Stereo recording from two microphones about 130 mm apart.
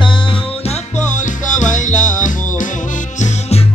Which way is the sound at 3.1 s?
65° left (ahead or behind).